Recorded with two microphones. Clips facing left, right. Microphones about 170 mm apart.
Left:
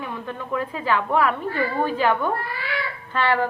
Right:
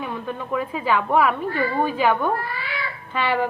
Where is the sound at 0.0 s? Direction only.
15° right (ahead or behind).